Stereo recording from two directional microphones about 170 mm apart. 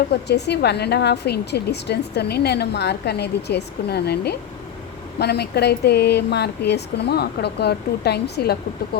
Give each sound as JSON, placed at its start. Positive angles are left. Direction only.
{"t": 0.1, "sound": "a woman's voice", "side_deg": 80}